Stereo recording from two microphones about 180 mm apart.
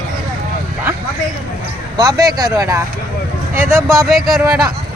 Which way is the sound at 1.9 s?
20° right (ahead or behind).